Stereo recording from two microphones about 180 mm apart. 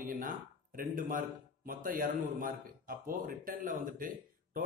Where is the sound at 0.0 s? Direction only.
50° right (ahead or behind).